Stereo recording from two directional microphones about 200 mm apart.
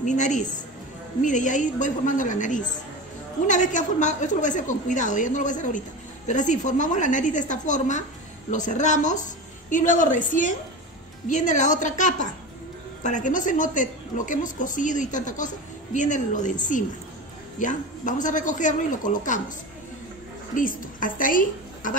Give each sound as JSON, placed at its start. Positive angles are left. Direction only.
{"t": 0.0, "sound": "a woman's voice", "side_deg": 35}
{"t": 17.6, "sound": "a woman's voice", "side_deg": 40}
{"t": 20.5, "sound": "a woman's voice", "side_deg": 40}